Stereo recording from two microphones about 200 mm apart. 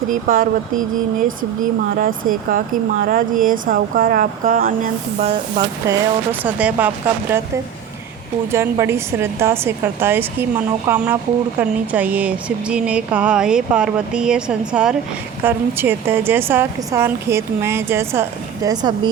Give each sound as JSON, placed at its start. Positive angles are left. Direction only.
{"t": 0.1, "sound": "speech", "side_deg": -45}
{"t": 2.0, "sound": "speech", "side_deg": -45}
{"t": 5.2, "sound": "a woman's voice", "side_deg": -20}
{"t": 8.5, "sound": "a woman's voice", "side_deg": -10}